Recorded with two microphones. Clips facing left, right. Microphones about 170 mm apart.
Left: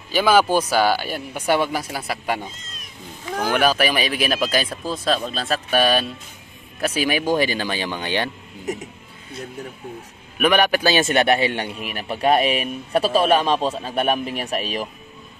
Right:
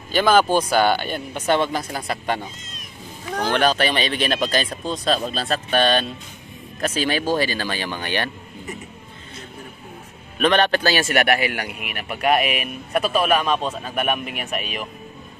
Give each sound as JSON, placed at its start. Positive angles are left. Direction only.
{"t": 0.1, "sound": "speech", "side_deg": 10}
{"t": 10.4, "sound": "a man's voice", "side_deg": 10}